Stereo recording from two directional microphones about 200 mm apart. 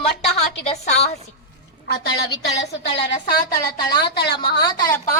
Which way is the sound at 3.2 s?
20° left (ahead or behind).